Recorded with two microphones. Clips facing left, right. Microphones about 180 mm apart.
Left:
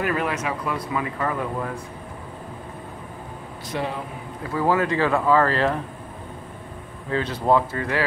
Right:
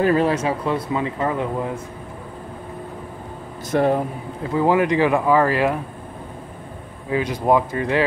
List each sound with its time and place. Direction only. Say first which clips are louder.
0.0 s speech: right 7 dB; 30° right (ahead or behind)
3.7 s speech: right 10 dB; 50° right (ahead or behind)
4.4 s speech: right 4 dB; 20° right (ahead or behind)
7.1 s speech: right 2 dB; 15° right (ahead or behind)